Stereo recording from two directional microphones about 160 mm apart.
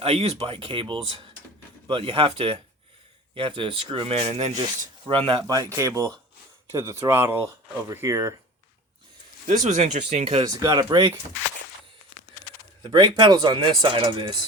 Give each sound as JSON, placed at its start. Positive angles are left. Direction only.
{"t": 0.0, "sound": "speech", "side_deg": -40}
{"t": 5.2, "sound": "speech", "side_deg": -30}
{"t": 9.5, "sound": "speech", "side_deg": -50}
{"t": 10.4, "sound": "speech", "side_deg": -25}
{"t": 12.8, "sound": "speech", "side_deg": -30}